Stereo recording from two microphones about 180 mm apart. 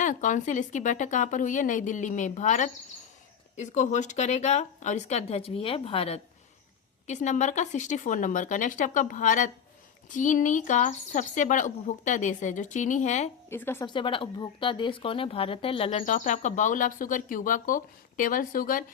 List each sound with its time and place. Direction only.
0.0 s speech: 45° left (ahead or behind)
13.5 s a woman's voice: 15° left (ahead or behind)
13.8 s speech: 25° left (ahead or behind); by 18.9 s 50° left (ahead or behind)